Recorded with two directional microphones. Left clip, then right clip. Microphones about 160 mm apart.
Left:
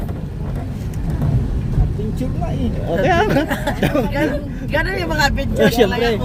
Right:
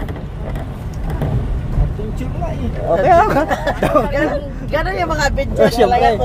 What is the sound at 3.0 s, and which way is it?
Speech, 20° left (ahead or behind).